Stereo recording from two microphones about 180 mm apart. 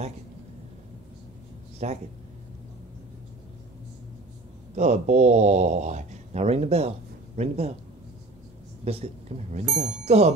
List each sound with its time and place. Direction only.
1.8 s speech: 40° right (ahead or behind)
4.7 s speech: 40° right (ahead or behind)
8.8 s a woman's voice: 35° right (ahead or behind)